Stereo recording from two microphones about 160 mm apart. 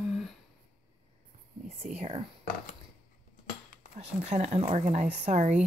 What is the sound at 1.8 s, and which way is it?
Speech, 40° right (ahead or behind).